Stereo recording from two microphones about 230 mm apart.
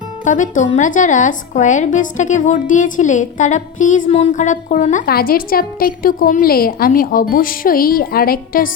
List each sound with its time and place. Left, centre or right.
0.3 s a woman's voice: left